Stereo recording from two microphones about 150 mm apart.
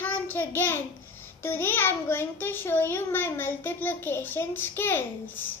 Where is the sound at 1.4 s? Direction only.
15° left (ahead or behind).